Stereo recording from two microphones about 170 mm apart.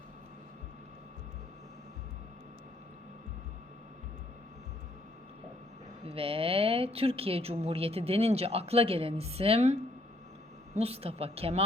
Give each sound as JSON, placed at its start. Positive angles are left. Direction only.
{"t": 6.1, "sound": "a woman's voice", "side_deg": -35}
{"t": 10.8, "sound": "a woman's voice", "side_deg": -35}